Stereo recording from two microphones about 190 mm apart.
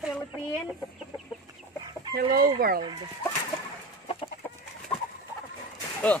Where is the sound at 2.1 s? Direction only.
50° right (ahead or behind).